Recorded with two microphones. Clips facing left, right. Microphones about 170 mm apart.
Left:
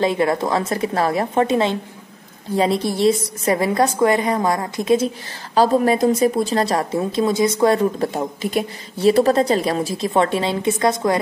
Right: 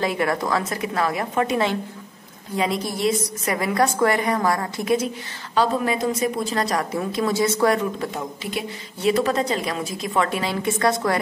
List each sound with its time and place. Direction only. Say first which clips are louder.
0.0 s a woman's voice: left 4 dB; 25° left (ahead or behind)
7.7 s speech: left 5 dB; 35° left (ahead or behind); by 11.1 s 20° left (ahead or behind)